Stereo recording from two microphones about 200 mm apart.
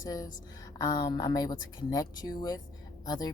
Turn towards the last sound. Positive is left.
turn(degrees=20)  # may be behind; listen again after turning